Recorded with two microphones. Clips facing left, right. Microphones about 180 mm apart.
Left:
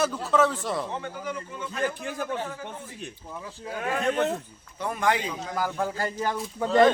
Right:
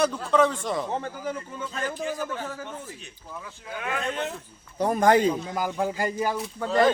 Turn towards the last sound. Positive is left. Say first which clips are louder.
# left 2 dB
turn(degrees=0)  # may be behind; listen again after turning